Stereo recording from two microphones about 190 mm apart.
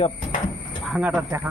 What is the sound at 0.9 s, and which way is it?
Speech, 5° right (ahead or behind).